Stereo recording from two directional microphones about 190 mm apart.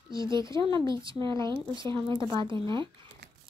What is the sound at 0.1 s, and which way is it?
Speech, 25° right (ahead or behind).